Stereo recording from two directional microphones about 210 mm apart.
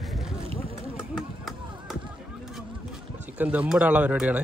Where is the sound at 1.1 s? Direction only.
Centre (ahead or behind).